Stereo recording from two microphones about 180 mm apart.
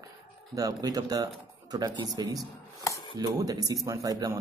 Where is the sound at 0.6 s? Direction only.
20° right (ahead or behind).